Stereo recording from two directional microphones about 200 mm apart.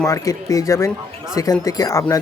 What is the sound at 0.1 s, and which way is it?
Speech, 15° left (ahead or behind).